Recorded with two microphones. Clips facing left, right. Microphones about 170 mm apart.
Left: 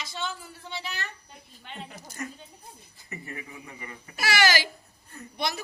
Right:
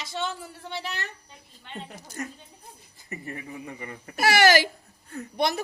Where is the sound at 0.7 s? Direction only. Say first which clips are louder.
Right 2 dB; 65° right (ahead or behind).